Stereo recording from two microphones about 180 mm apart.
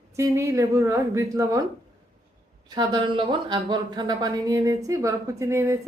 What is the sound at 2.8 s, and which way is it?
A woman's voice, 25° right (ahead or behind).